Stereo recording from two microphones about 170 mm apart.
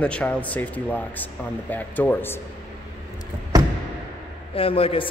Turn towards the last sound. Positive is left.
turn(degrees=35)  # may be behind; listen again after turning